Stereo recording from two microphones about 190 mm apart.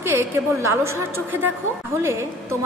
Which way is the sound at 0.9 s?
90° right.